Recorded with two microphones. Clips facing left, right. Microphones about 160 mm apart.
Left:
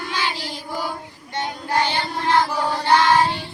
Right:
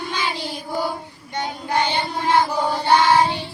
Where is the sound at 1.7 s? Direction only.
15° right (ahead or behind).